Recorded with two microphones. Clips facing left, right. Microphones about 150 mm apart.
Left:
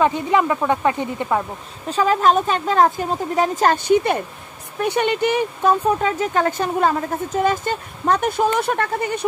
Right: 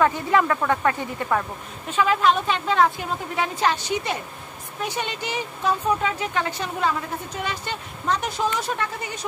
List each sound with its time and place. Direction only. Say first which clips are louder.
0.0 s speech: left 2 dB; 20° left (ahead or behind)
1.9 s speech: left 3 dB; 40° left (ahead or behind); by 9.2 s 55° left (ahead or behind)